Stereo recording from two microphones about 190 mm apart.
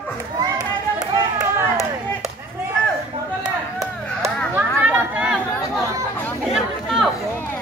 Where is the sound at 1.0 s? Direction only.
20° right (ahead or behind).